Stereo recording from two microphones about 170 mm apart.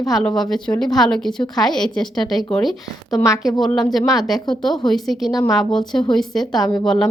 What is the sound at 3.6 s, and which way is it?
A woman's voice, centre (ahead or behind).